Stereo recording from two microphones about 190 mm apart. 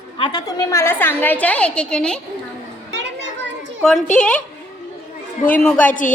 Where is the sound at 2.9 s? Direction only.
70° right (ahead or behind).